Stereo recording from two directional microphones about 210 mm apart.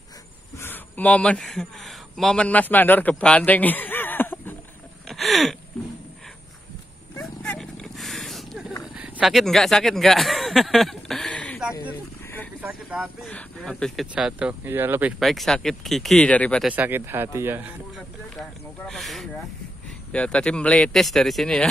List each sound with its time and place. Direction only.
0.6 s a man's voice: 10° left (ahead or behind)
5.0 s gasp: centre (ahead or behind)
7.2 s dog: 5° left (ahead or behind)
8.9 s a sound: 5° right (ahead or behind)
12.6 s speech: 5° right (ahead or behind)
16.6 s speech: 10° right (ahead or behind)
18.9 s speech: centre (ahead or behind)